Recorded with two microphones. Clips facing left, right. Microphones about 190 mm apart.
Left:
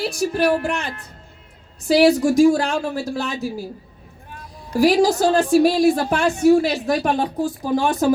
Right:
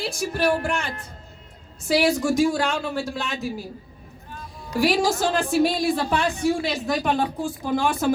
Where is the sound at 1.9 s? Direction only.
35° left (ahead or behind).